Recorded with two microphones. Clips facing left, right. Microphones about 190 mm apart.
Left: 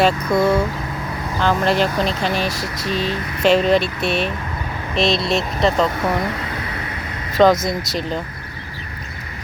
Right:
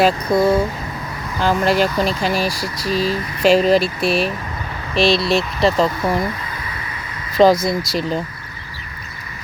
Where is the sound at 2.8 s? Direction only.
40° right (ahead or behind).